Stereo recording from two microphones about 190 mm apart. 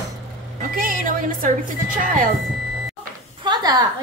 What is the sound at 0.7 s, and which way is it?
Speech, 45° right (ahead or behind).